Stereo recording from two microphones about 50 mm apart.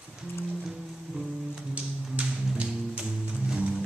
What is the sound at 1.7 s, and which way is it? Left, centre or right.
Music, right.